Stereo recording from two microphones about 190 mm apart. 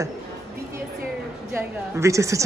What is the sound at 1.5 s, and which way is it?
Speech, 15° right (ahead or behind).